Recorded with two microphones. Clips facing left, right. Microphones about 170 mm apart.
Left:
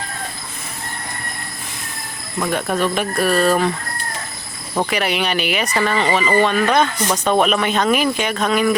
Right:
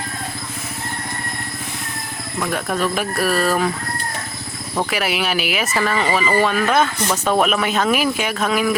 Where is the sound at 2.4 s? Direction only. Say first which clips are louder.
Left 2 dB; centre (ahead or behind).